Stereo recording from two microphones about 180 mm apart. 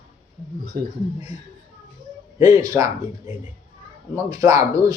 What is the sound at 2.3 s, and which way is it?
Speech, 20° right (ahead or behind).